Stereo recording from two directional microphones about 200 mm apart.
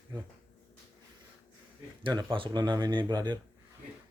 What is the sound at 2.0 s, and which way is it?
Speech, 20° right (ahead or behind).